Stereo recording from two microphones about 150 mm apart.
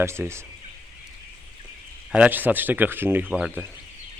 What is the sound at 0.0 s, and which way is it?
Speech, 15° right (ahead or behind).